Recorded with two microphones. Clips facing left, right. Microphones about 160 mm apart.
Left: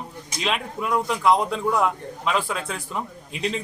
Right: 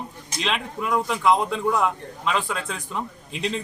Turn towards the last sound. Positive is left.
turn(degrees=0)  # may be behind; listen again after turning